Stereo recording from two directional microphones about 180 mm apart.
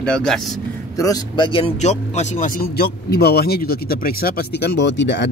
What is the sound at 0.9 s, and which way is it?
Speech, 20° left (ahead or behind).